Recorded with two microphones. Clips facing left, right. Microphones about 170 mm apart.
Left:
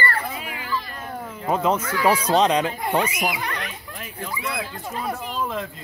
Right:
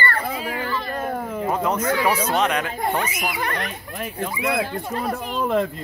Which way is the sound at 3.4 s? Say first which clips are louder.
Right 4 dB; 50° right (ahead or behind).